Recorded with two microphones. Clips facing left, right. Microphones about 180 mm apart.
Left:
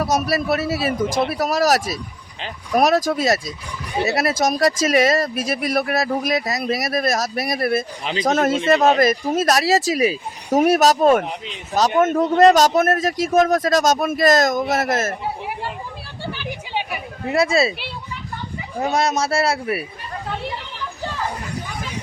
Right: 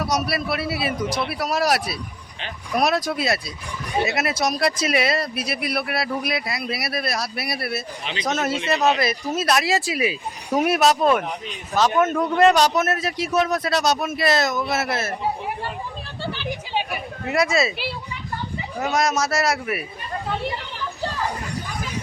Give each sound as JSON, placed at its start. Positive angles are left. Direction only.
{"t": 0.0, "sound": "a man's voice", "side_deg": 45}
{"t": 11.2, "sound": "a man's voice", "side_deg": 25}
{"t": 12.4, "sound": "speech", "side_deg": 40}
{"t": 16.2, "sound": "a sound", "side_deg": 10}
{"t": 17.2, "sound": "a man's voice", "side_deg": 30}
{"t": 18.8, "sound": "a man's voice", "side_deg": 30}